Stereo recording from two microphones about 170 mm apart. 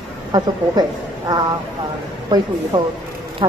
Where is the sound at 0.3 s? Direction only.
25° right (ahead or behind).